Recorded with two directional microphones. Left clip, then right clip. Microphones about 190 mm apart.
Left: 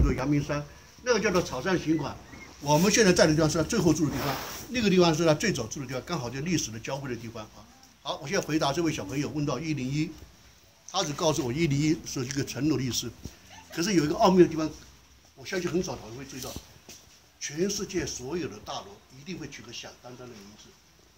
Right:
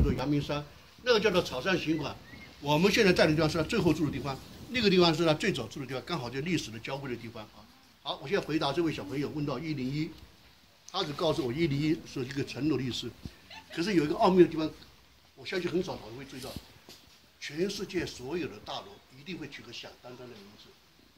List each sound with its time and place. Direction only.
0.2 s speech: 30° right (ahead or behind)
1.1 s speech: 55° right (ahead or behind)
1.6 s speech: 20° right (ahead or behind)
2.6 s a man's voice: 10° left (ahead or behind)
8.0 s speech: 35° left (ahead or behind)
13.7 s a man's voice: 20° left (ahead or behind)
17.4 s a man's voice: 10° left (ahead or behind)